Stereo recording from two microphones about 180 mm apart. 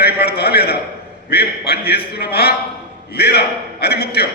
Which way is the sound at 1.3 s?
60° left (ahead or behind).